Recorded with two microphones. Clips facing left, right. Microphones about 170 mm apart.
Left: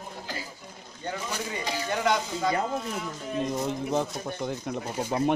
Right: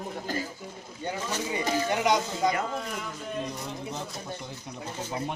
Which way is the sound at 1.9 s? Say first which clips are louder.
Even; 15° right (ahead or behind).